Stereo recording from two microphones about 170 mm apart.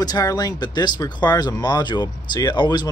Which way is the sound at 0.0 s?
20° left (ahead or behind).